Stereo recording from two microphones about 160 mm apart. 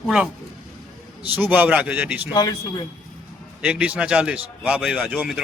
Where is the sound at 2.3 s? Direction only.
25° left (ahead or behind).